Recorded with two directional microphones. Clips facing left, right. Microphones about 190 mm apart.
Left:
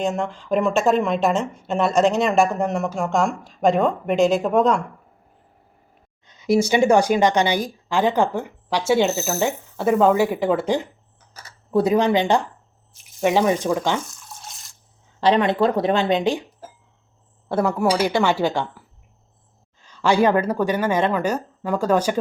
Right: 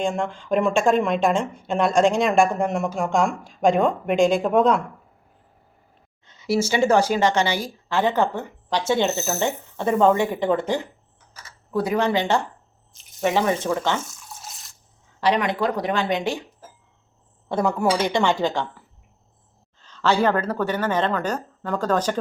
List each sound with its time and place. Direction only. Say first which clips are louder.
0.0 s speech: left 1 dB; centre (ahead or behind)
6.2 s speech: left 4 dB; 15° left (ahead or behind)
11.7 s speech: left 4 dB; 25° left (ahead or behind)
14.1 s toothbrush: even; centre (ahead or behind)
15.2 s speech: left 4 dB; 25° left (ahead or behind)
17.5 s speech: left 1 dB; 5° left (ahead or behind)
19.8 s speech: left 2 dB; 10° left (ahead or behind)